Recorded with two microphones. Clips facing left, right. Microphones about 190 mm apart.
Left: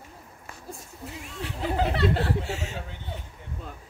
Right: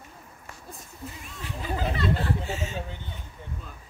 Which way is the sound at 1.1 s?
70° left (ahead or behind).